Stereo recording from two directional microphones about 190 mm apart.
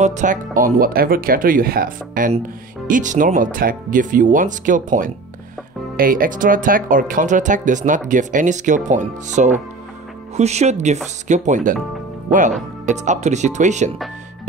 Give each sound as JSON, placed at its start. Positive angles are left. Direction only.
{"t": 0.0, "sound": "speech", "side_deg": -40}